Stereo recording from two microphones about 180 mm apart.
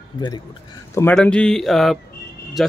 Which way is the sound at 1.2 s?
5° left (ahead or behind).